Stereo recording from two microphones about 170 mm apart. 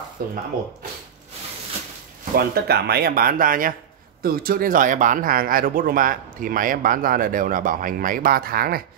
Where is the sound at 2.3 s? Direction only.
65° right (ahead or behind).